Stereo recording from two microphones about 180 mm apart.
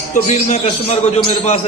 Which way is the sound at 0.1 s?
35° left (ahead or behind).